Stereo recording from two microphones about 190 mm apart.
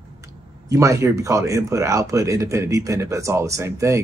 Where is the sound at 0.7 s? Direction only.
15° right (ahead or behind).